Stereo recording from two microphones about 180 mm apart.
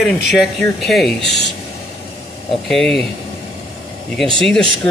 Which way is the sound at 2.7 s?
Centre (ahead or behind).